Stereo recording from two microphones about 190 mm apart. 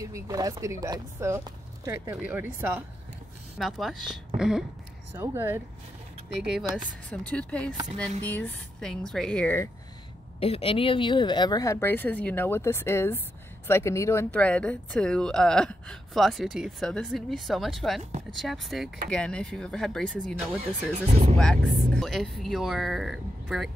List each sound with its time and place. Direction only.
0.0 s speech: 20° right (ahead or behind)
5.1 s speech: 15° right (ahead or behind)
6.4 s speech: 5° right (ahead or behind)
10.4 s speech: 30° left (ahead or behind); by 20.3 s centre (ahead or behind)
21.1 s speech: 35° right (ahead or behind)
21.4 s speech: 5° left (ahead or behind)